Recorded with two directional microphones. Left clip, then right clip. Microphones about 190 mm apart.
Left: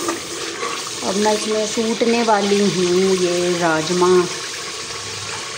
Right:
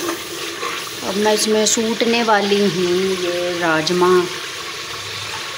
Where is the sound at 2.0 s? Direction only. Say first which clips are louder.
Even; 5° left (ahead or behind).